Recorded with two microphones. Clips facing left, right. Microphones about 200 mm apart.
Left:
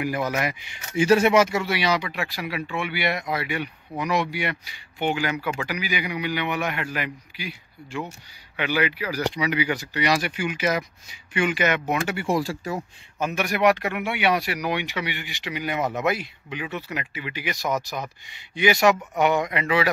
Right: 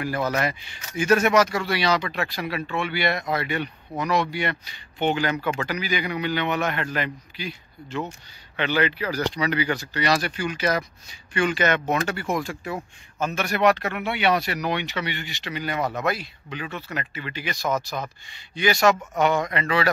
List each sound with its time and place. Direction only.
0.0 s speech: 15° left (ahead or behind)
0.9 s speech: 30° left (ahead or behind)
1.6 s speech: 15° left (ahead or behind)
12.3 s speech: 35° left (ahead or behind)
13.2 s speech: 15° left (ahead or behind)